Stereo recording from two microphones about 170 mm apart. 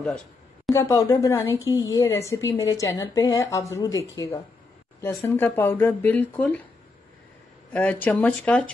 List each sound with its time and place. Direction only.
0.7 s a woman's voice: 20° left (ahead or behind)
5.0 s speech: 10° left (ahead or behind)
7.7 s speech: 10° left (ahead or behind)